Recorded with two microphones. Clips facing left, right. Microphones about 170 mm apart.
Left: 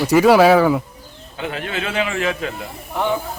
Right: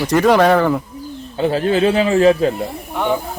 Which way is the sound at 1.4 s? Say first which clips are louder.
Right 11 dB; 30° right (ahead or behind).